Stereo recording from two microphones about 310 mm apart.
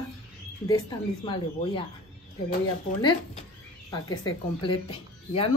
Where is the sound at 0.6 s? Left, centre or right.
Centre.